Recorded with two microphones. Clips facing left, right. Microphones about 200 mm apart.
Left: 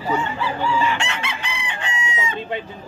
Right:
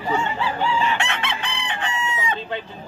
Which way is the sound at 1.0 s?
55° right (ahead or behind).